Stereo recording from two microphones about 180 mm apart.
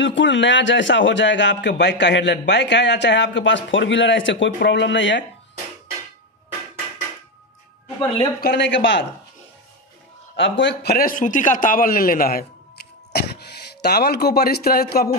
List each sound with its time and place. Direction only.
0.0 s a man's voice: 90° left
8.4 s speech: 70° left (ahead or behind); by 9.0 s 90° left
10.3 s a man's voice: 90° left; by 15.0 s 60° left (ahead or behind)